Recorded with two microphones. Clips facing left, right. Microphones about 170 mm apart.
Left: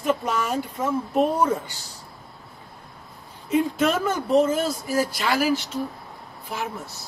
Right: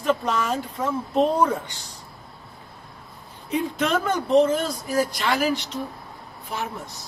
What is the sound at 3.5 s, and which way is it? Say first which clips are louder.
Speech: left 2 dB; 5° left (ahead or behind).